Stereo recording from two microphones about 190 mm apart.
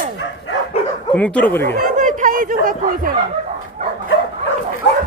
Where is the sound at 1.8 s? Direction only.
45° right (ahead or behind).